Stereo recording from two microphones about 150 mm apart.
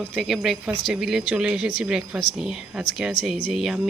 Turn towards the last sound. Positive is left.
turn(degrees=0)  # may be behind; listen again after turning